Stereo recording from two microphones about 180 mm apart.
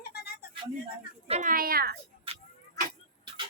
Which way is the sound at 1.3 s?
45° right (ahead or behind).